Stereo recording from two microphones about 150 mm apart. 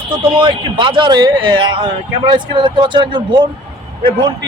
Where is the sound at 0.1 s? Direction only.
35° right (ahead or behind).